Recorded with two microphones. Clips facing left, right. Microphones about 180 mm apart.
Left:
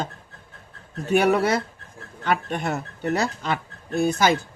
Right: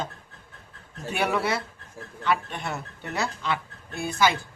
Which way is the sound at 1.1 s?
45° left (ahead or behind).